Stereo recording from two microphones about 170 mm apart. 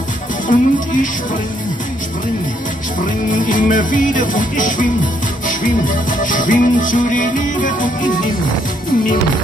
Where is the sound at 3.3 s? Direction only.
50° left (ahead or behind).